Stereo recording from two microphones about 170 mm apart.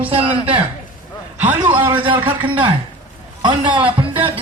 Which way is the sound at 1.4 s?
10° right (ahead or behind).